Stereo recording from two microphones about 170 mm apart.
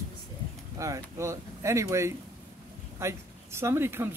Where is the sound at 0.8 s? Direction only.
20° right (ahead or behind).